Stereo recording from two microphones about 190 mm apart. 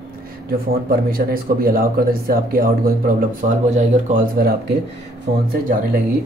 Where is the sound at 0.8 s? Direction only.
50° right (ahead or behind).